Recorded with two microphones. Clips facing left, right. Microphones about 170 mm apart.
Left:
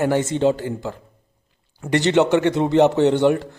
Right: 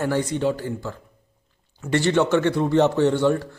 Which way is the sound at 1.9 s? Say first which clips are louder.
Left 3 dB; 20° left (ahead or behind).